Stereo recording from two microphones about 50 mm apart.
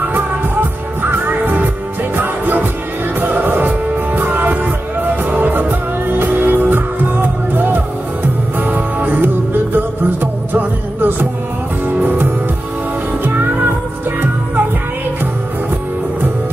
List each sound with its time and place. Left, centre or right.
0.0 s music: right